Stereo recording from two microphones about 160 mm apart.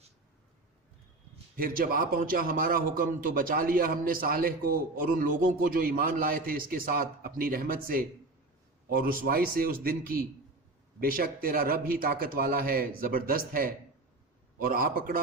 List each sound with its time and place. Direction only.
1.5 s a man's voice: 65° right (ahead or behind)